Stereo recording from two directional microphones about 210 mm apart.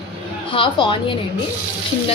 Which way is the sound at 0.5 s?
25° left (ahead or behind).